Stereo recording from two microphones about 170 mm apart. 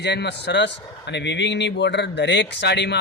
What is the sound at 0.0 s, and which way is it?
A man's voice, 80° left.